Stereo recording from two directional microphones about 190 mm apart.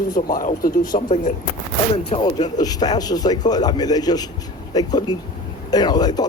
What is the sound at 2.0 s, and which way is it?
Speech, 25° left (ahead or behind).